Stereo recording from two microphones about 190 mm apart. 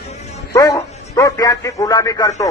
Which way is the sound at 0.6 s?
15° left (ahead or behind).